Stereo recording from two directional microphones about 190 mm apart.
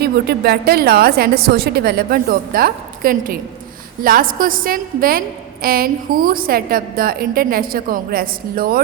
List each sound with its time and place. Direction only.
0.0 s a woman's voice: 55° right (ahead or behind)